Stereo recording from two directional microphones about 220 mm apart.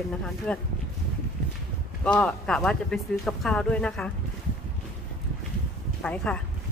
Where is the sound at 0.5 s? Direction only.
5° left (ahead or behind).